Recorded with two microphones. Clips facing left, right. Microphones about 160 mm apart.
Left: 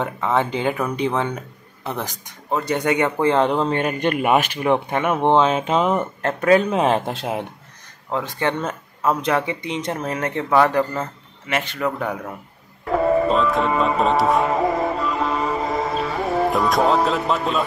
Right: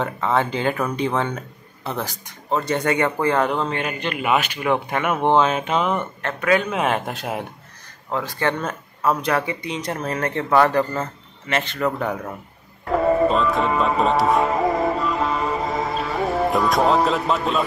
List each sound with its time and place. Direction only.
0.0 s a man's voice: 15° left (ahead or behind); by 4.6 s 45° left (ahead or behind)
4.6 s speech: 25° left (ahead or behind)
10.5 s a man's voice: 5° left (ahead or behind)
12.9 s music: centre (ahead or behind)